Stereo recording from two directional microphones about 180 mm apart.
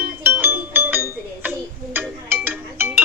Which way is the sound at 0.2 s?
10° right (ahead or behind).